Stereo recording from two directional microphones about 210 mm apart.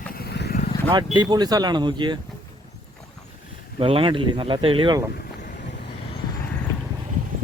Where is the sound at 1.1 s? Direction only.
20° right (ahead or behind).